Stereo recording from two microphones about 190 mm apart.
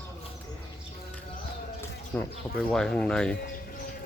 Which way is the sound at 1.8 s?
5° left (ahead or behind).